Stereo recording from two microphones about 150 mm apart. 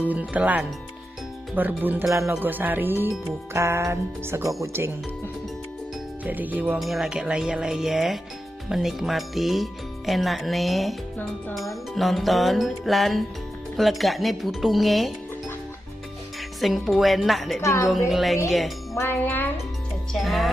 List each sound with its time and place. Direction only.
0.1 s speech: 10° right (ahead or behind)
6.2 s speech: 10° right (ahead or behind)
16.6 s speech: centre (ahead or behind)
18.9 s music: 15° left (ahead or behind)
20.1 s speech: centre (ahead or behind)